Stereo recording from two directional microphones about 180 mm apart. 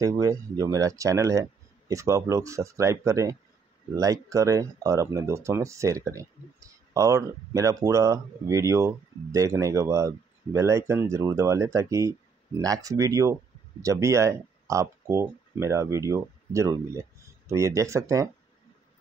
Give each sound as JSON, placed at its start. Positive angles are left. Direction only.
{"t": 0.0, "sound": "speech", "side_deg": -20}